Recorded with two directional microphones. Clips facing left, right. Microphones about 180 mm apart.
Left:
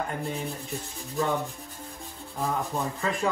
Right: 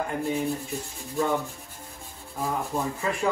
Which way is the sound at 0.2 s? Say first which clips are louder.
Right 5 dB; centre (ahead or behind).